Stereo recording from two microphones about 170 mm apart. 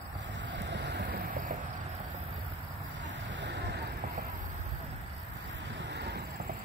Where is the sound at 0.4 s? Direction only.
90° right; by 1.6 s 55° right (ahead or behind).